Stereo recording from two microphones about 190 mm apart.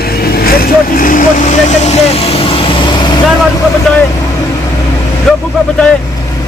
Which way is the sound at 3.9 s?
Centre (ahead or behind).